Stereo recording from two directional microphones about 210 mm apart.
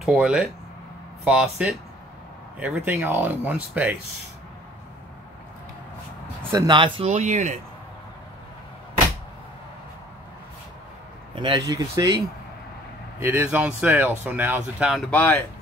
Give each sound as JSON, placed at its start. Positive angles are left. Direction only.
{"t": 0.0, "sound": "speech", "side_deg": -5}
{"t": 6.5, "sound": "speech", "side_deg": -20}
{"t": 11.3, "sound": "speech", "side_deg": -20}
{"t": 13.2, "sound": "speech", "side_deg": -10}